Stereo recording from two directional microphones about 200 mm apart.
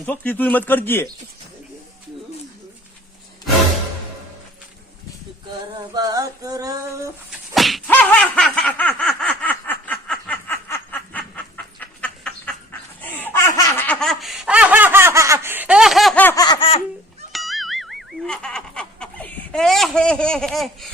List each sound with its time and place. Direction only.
0.0 s speech: 5° left (ahead or behind)
5.9 s a sound: 20° right (ahead or behind)
7.3 s slap: centre (ahead or behind)
9.4 s snicker: 10° left (ahead or behind)
13.0 s laughter: 10° left (ahead or behind); by 16.8 s 30° left (ahead or behind)
17.3 s music: centre (ahead or behind)